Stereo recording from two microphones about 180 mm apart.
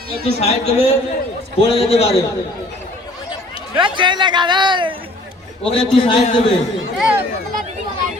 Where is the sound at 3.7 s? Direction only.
25° right (ahead or behind).